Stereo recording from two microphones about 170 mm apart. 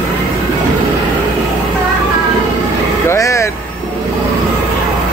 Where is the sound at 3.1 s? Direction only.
15° left (ahead or behind).